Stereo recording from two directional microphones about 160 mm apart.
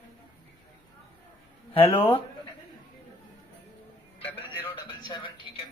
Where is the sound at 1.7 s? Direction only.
35° left (ahead or behind).